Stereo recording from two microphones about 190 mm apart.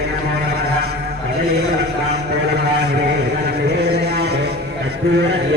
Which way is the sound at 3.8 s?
60° right (ahead or behind).